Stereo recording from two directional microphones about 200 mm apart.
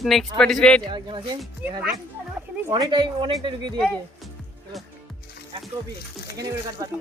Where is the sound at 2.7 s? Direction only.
25° right (ahead or behind).